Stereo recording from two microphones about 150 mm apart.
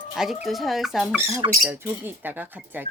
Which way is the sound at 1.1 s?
15° right (ahead or behind).